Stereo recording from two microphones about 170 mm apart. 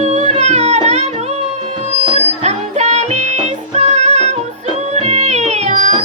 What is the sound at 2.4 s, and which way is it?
Music, 40° right (ahead or behind).